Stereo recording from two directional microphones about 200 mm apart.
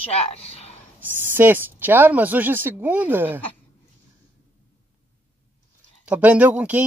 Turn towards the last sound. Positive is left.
turn(degrees=-5)  # may be behind; listen again after turning